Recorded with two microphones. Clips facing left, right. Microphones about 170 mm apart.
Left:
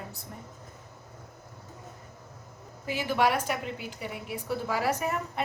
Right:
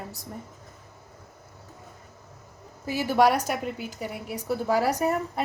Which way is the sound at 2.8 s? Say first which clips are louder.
Right 5 dB; 40° right (ahead or behind).